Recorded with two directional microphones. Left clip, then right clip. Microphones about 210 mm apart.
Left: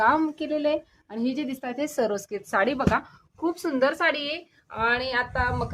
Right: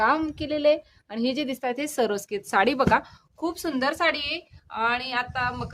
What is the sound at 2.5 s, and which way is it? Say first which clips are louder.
A woman's voice: right 3 dB; 35° right (ahead or behind).